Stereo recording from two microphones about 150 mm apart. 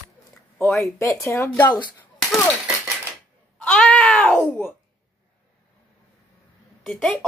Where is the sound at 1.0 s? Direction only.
20° left (ahead or behind).